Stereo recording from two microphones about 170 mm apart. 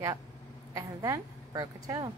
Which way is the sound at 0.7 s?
20° right (ahead or behind).